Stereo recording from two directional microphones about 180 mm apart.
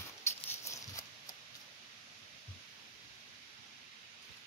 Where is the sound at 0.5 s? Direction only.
15° left (ahead or behind).